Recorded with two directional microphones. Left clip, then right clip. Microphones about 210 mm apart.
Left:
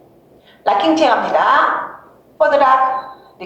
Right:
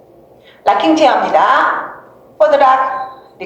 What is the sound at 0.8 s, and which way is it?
A woman's voice, 25° right (ahead or behind).